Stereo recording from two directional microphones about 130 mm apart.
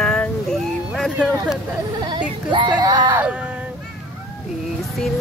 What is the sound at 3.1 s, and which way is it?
Speech, 10° right (ahead or behind).